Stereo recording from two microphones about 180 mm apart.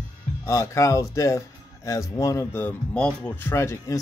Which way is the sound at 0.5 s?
15° left (ahead or behind).